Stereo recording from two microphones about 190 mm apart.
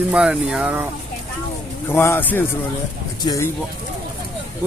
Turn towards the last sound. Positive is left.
turn(degrees=15)  # may be behind; listen again after turning